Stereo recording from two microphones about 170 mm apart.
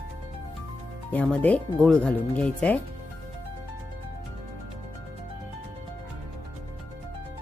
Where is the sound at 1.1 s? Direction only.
5° left (ahead or behind).